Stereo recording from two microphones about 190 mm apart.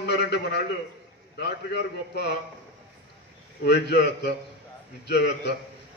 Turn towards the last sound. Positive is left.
turn(degrees=60)  # may be behind; listen again after turning